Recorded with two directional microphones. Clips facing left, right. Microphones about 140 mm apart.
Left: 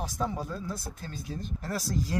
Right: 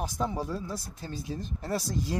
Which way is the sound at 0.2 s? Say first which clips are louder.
Right 1 dB; 20° right (ahead or behind).